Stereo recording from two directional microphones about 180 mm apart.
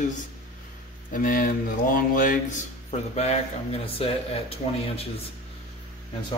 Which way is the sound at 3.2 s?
35° left (ahead or behind).